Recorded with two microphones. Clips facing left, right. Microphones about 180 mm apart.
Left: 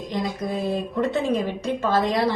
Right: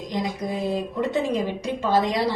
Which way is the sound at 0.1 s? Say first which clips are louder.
Left 1 dB; 15° right (ahead or behind).